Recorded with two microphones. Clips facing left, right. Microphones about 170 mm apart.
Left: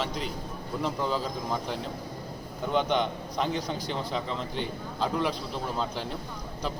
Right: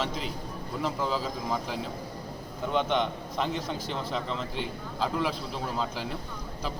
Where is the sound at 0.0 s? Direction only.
Centre (ahead or behind).